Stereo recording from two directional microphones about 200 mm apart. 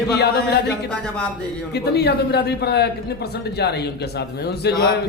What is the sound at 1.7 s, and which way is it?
Speech, 55° left (ahead or behind).